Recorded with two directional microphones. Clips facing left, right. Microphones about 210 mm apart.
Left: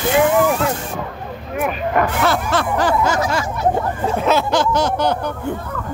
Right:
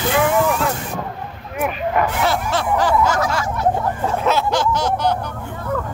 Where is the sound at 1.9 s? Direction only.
50° left (ahead or behind).